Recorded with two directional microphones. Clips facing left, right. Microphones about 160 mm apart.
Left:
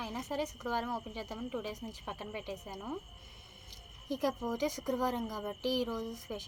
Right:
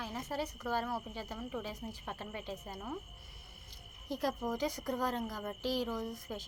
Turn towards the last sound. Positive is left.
turn(degrees=15)  # may be behind; listen again after turning